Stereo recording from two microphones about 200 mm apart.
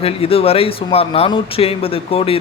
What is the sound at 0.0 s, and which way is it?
A man's voice, 30° left (ahead or behind).